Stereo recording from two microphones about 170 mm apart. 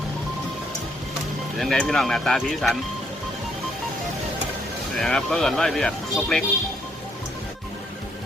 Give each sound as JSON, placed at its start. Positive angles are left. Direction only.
{"t": 1.5, "sound": "speech", "side_deg": 5}
{"t": 4.9, "sound": "speech", "side_deg": 5}